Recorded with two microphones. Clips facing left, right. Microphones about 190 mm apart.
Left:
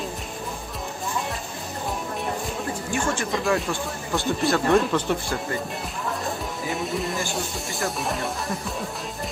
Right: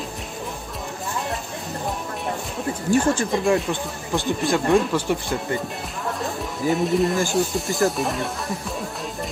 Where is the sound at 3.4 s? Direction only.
20° right (ahead or behind); by 8.7 s centre (ahead or behind).